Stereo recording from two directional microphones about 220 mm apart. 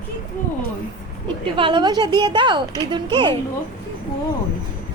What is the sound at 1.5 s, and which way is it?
Speech, 20° right (ahead or behind).